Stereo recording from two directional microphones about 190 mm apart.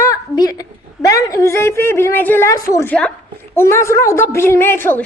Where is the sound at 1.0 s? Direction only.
15° left (ahead or behind).